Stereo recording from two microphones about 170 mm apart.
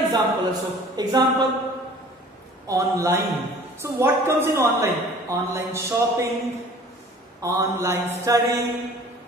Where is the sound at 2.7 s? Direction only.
15° right (ahead or behind).